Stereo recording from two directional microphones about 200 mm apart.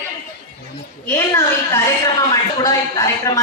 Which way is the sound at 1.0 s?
10° left (ahead or behind).